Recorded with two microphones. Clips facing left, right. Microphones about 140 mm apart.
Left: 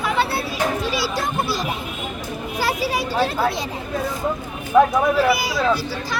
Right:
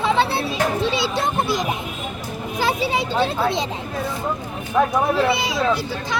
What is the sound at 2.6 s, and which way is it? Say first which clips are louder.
Speech: right 1 dB; 20° right (ahead or behind).